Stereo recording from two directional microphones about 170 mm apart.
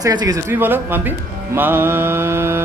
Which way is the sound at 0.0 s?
20° right (ahead or behind).